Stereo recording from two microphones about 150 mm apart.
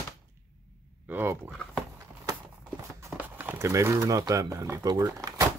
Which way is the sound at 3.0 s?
15° right (ahead or behind).